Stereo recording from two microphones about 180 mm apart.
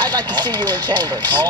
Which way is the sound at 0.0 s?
25° right (ahead or behind).